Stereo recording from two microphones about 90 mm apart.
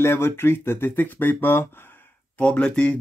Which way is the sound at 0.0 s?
25° left (ahead or behind).